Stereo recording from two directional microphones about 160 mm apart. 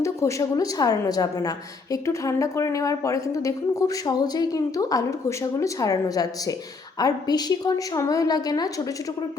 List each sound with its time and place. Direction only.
0.0 s a woman's voice: 20° left (ahead or behind)